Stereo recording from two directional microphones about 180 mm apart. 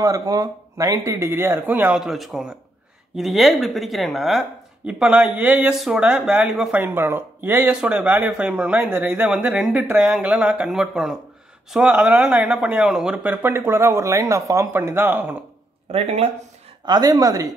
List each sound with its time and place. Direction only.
0.0 s speech: 20° right (ahead or behind)
15.9 s speech: 35° right (ahead or behind)
16.8 s a woman's voice: 20° right (ahead or behind)